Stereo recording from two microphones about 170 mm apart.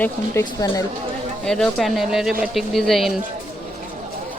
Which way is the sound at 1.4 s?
5° left (ahead or behind).